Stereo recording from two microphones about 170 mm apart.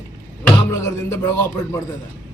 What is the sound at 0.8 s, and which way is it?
Music, 20° left (ahead or behind).